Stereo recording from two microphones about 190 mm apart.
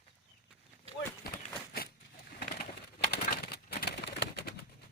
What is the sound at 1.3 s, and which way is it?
Run, 55° left (ahead or behind).